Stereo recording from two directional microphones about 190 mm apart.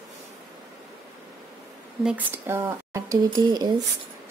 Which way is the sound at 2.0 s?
5° right (ahead or behind).